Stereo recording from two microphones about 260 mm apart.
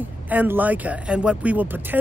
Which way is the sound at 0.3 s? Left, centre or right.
Centre.